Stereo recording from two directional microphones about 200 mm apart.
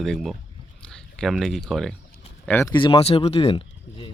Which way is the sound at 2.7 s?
25° left (ahead or behind).